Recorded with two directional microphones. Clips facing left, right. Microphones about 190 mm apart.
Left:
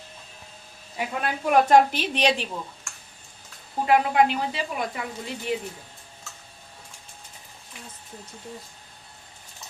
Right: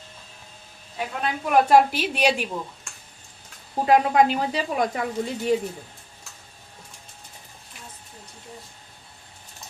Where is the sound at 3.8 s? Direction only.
40° right (ahead or behind).